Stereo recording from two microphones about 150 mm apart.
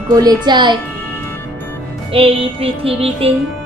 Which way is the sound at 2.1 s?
40° right (ahead or behind).